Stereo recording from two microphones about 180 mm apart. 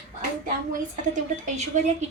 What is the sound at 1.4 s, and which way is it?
Speech, 45° right (ahead or behind).